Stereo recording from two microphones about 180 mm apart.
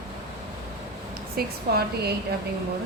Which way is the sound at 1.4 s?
60° right (ahead or behind).